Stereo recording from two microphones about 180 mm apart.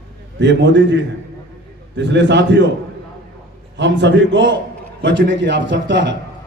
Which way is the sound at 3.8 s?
85° right.